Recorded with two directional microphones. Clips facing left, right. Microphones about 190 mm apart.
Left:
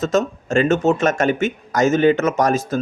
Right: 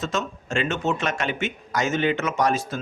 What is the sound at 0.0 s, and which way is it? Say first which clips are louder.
Speech: left 9 dB; 40° left (ahead or behind).